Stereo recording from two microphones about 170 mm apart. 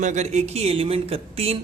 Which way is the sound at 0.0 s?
45° right (ahead or behind).